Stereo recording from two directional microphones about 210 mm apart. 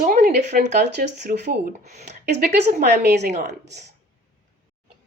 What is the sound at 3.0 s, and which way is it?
Speech, 50° right (ahead or behind).